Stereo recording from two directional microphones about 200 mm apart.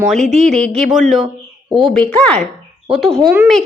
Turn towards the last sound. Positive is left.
turn(degrees=-15)  # may be behind; listen again after turning